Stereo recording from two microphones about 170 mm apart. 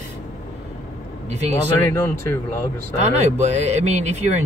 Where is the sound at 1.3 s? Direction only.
40° right (ahead or behind).